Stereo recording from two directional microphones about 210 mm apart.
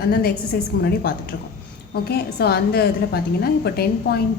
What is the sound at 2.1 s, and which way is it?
A woman's voice, 50° left (ahead or behind).